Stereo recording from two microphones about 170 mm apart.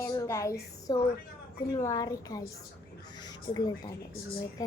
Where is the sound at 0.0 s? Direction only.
15° left (ahead or behind).